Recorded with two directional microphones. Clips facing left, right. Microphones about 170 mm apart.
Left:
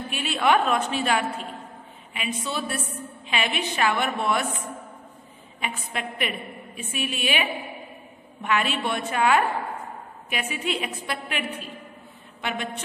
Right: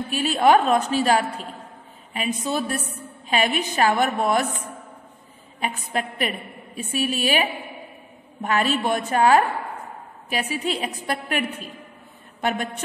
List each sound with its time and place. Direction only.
0.1 s a woman's voice: 40° right (ahead or behind)
5.6 s a woman's voice: 40° right (ahead or behind)